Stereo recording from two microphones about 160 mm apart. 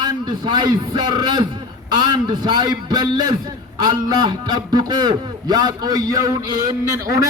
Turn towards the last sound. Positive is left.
turn(degrees=-25)  # may be behind; listen again after turning